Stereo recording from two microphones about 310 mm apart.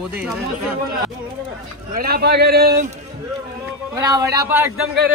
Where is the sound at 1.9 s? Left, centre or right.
Right.